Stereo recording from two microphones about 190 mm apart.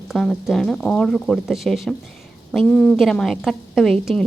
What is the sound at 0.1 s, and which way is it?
Speech, centre (ahead or behind).